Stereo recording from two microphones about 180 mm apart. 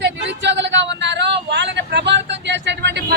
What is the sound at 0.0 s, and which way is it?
Vehicle, 80° right.